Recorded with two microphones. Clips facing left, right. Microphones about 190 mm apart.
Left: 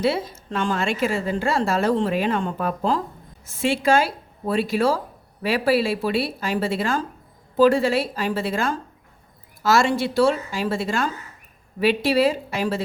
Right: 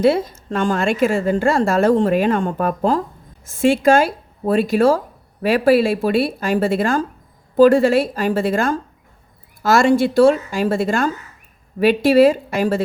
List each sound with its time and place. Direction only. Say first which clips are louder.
0.0 s a woman's voice: right 7 dB; 50° right (ahead or behind)